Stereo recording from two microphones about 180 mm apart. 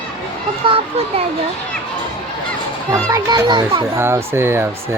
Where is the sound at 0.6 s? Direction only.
30° right (ahead or behind).